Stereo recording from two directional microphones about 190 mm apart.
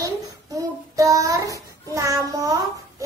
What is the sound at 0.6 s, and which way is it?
Child singing, 15° right (ahead or behind).